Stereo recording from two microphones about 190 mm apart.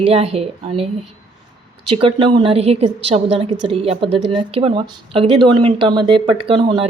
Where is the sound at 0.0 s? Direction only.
30° right (ahead or behind).